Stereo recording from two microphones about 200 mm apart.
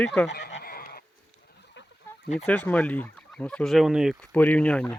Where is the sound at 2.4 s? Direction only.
5° left (ahead or behind).